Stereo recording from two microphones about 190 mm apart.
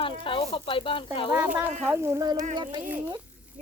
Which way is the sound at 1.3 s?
10° right (ahead or behind).